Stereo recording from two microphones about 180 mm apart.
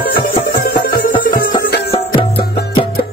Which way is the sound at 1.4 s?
65° left (ahead or behind).